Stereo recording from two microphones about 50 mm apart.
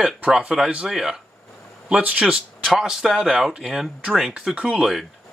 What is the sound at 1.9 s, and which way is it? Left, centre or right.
Speech, right.